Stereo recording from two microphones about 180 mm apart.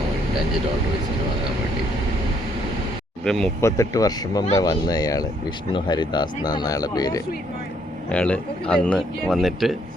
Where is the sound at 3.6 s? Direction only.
20° left (ahead or behind).